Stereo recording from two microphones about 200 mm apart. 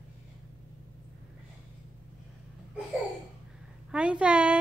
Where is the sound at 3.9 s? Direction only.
5° right (ahead or behind).